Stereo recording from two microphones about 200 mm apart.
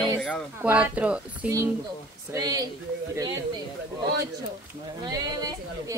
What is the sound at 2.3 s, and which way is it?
Speech, 20° right (ahead or behind).